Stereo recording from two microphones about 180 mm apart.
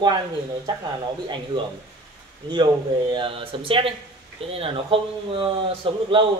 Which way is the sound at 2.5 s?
25° right (ahead or behind).